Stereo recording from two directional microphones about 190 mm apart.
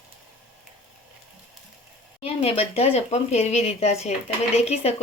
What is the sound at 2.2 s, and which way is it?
A woman's voice, 30° left (ahead or behind).